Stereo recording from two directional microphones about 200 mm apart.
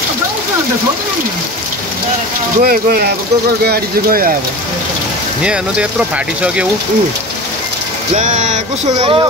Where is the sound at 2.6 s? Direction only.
50° right (ahead or behind).